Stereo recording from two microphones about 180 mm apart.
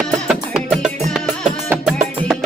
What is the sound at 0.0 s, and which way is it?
Music, centre (ahead or behind).